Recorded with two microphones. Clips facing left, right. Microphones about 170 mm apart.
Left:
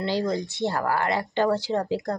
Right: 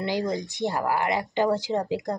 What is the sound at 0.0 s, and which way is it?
Speech, 15° right (ahead or behind).